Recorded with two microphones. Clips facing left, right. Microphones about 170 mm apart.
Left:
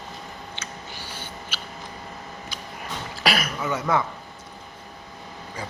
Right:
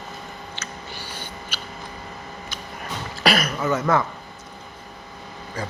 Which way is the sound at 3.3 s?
45° right (ahead or behind).